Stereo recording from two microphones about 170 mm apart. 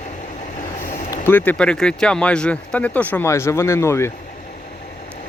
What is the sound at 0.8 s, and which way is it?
Vehicle, 50° left (ahead or behind).